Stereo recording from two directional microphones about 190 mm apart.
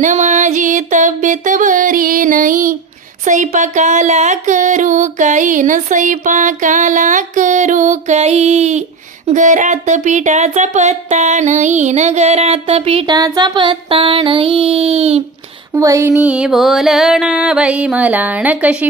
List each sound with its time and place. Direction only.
0.0 s music: 40° right (ahead or behind)
3.3 s speech: 40° right (ahead or behind)
15.7 s music: 15° right (ahead or behind)